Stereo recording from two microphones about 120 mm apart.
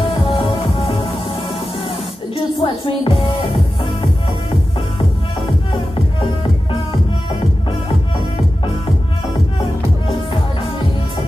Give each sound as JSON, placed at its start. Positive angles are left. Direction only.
{"t": 0.1, "sound": "music", "side_deg": 45}
{"t": 2.6, "sound": "speech", "side_deg": 45}
{"t": 6.7, "sound": "music", "side_deg": 45}